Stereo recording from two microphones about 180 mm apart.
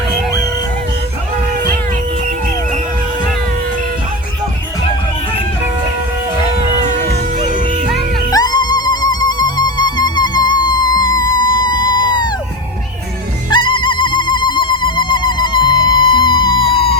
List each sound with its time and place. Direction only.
8.3 s music: 20° left (ahead or behind)
13.5 s music: 25° left (ahead or behind)